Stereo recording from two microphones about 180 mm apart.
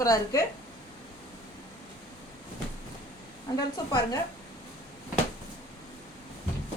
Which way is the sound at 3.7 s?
20° left (ahead or behind).